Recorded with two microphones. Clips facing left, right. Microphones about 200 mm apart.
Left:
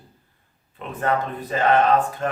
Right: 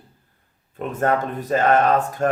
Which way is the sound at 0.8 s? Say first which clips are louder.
Right 3 dB; 45° right (ahead or behind).